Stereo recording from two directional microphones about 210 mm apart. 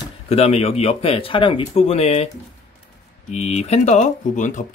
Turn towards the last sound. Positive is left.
turn(degrees=35)  # may be behind; listen again after turning